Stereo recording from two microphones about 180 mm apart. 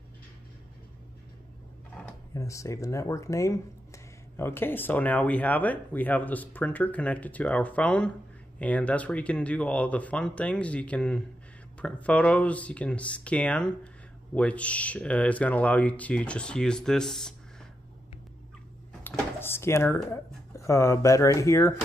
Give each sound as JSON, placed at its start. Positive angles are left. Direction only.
{"t": 2.3, "sound": "speech", "side_deg": 15}
{"t": 19.0, "sound": "speech", "side_deg": 15}